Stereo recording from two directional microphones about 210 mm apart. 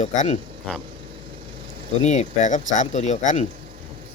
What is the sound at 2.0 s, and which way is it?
Speech, 35° left (ahead or behind).